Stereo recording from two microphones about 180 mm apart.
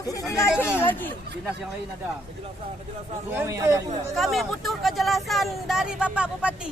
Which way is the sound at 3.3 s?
15° right (ahead or behind).